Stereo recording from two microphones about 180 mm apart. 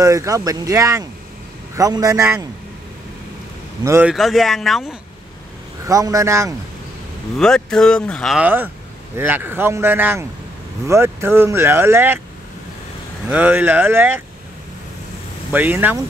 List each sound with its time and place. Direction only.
0.0 s speech: 15° right (ahead or behind)
3.8 s speech: 15° right (ahead or behind)
4.1 s speech: centre (ahead or behind)
5.9 s speech: 15° right (ahead or behind)
7.3 s speech: 5° left (ahead or behind)
13.3 s speech: 10° right (ahead or behind)
15.5 s speech: 10° right (ahead or behind)